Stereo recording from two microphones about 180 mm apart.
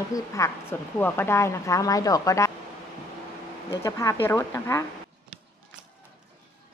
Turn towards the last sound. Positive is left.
turn(degrees=15)  # may be behind; listen again after turning